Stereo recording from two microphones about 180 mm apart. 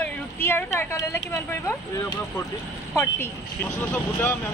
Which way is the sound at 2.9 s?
15° left (ahead or behind).